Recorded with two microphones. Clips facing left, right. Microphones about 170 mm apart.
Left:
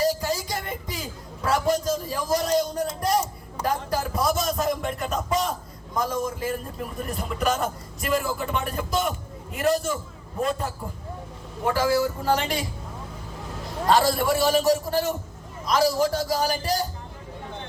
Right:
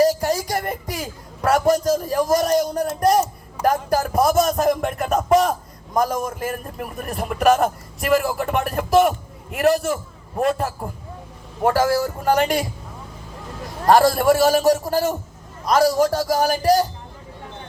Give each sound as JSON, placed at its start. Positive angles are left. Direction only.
{"t": 0.2, "sound": "music", "side_deg": -65}
{"t": 1.4, "sound": "a man's voice", "side_deg": -60}
{"t": 11.6, "sound": "speech", "side_deg": -50}
{"t": 12.3, "sound": "speech", "side_deg": -65}
{"t": 13.8, "sound": "a man's voice", "side_deg": -60}
{"t": 15.6, "sound": "a man's voice", "side_deg": -70}